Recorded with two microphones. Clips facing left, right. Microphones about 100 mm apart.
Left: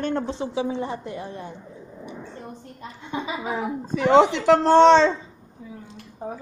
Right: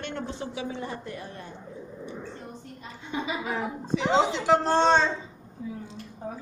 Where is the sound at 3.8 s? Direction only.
50° left (ahead or behind); by 5.1 s 85° left.